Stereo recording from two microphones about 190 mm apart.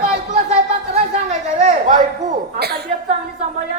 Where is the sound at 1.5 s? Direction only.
35° right (ahead or behind).